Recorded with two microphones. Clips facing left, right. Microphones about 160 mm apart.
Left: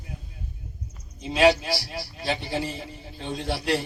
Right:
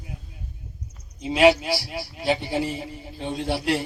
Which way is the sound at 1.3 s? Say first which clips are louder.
Right 2 dB; 20° right (ahead or behind).